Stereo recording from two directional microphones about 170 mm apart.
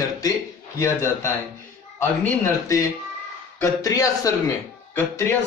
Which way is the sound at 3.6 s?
20° left (ahead or behind).